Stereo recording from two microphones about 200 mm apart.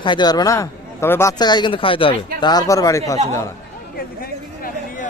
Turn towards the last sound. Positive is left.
turn(degrees=45)  # may be behind; listen again after turning